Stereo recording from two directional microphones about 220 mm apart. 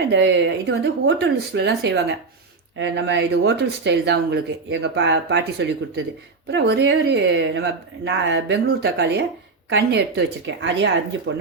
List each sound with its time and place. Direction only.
0.1 s speech: 55° right (ahead or behind)